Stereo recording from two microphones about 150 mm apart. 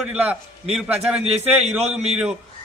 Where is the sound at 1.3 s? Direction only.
45° right (ahead or behind).